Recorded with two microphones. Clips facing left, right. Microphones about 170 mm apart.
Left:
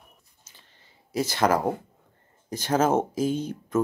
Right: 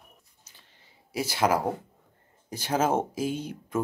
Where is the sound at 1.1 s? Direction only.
10° right (ahead or behind).